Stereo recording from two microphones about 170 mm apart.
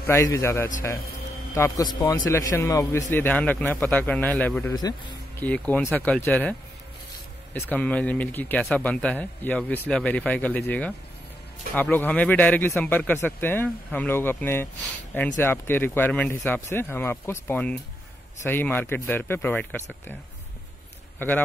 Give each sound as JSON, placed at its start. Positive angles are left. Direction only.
{"t": 0.0, "sound": "speech", "side_deg": 15}
{"t": 4.7, "sound": "a man's voice", "side_deg": 20}
{"t": 5.4, "sound": "speech", "side_deg": 10}
{"t": 7.5, "sound": "speech", "side_deg": 10}